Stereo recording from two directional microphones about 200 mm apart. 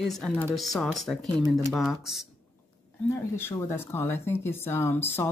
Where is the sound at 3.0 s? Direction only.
10° left (ahead or behind).